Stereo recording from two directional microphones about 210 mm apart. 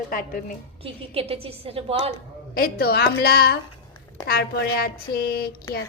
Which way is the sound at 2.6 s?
45° left (ahead or behind).